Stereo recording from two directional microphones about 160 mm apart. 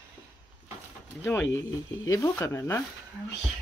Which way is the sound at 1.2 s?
15° left (ahead or behind).